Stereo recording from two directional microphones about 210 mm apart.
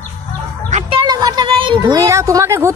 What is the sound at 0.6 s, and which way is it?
Chicken, 35° right (ahead or behind).